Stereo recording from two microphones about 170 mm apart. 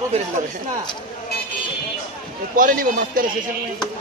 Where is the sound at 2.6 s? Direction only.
55° right (ahead or behind).